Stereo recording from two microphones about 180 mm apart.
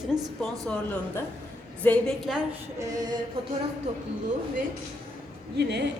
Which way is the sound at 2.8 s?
20° right (ahead or behind).